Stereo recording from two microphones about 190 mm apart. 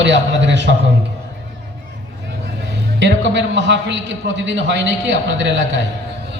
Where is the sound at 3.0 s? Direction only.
70° right (ahead or behind).